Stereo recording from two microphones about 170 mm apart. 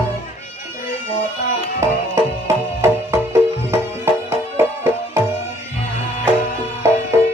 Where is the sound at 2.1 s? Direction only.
15° right (ahead or behind).